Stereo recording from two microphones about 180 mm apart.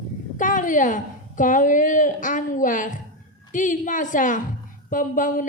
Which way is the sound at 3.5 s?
45° left (ahead or behind).